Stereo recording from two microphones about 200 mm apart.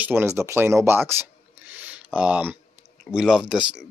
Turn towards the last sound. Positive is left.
turn(degrees=-5)  # may be behind; listen again after turning